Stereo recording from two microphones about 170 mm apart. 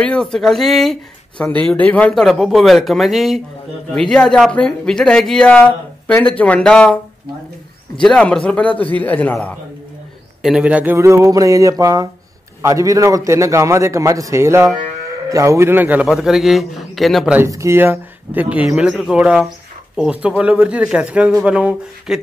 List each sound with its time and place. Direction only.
0.0 s speech: 5° left (ahead or behind)
8.0 s speech: 5° left (ahead or behind)
10.4 s speech: 5° right (ahead or behind)
17.4 s speech: 15° right (ahead or behind)